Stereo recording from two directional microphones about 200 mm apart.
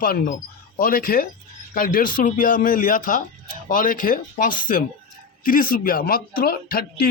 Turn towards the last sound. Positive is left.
turn(degrees=50)  # may be behind; listen again after turning